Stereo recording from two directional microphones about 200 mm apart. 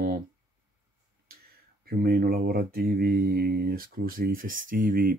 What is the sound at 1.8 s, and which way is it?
Mantra, 50° right (ahead or behind).